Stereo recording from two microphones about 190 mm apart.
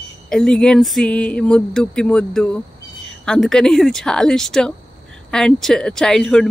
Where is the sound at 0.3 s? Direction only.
5° left (ahead or behind).